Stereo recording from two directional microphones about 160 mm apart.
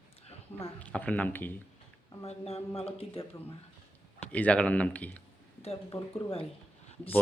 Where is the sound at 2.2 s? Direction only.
40° left (ahead or behind).